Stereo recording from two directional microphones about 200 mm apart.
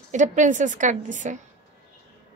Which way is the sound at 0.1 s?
40° right (ahead or behind).